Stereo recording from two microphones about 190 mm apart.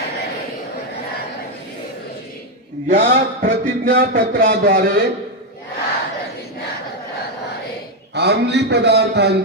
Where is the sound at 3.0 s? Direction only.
45° right (ahead or behind).